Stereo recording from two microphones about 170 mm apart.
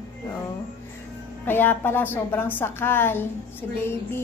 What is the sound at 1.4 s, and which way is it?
A woman's voice, 10° left (ahead or behind).